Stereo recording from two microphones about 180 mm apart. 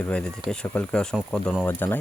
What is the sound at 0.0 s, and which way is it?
Speech, 5° left (ahead or behind).